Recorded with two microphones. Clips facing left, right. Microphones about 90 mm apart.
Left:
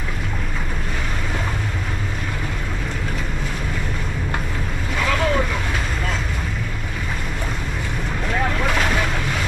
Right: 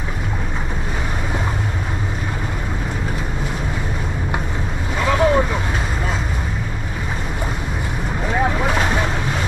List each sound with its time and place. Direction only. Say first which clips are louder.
4.9 s vehicle: right 4 dB; 20° right (ahead or behind)
8.3 s vehicle: right 3 dB; 15° right (ahead or behind)